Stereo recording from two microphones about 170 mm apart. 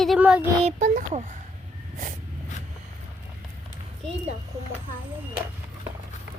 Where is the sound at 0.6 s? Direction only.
45° right (ahead or behind).